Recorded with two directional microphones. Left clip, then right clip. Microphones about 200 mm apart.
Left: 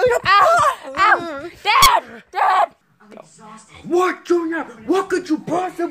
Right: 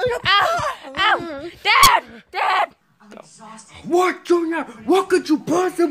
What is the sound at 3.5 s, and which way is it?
Speech, 45° right (ahead or behind).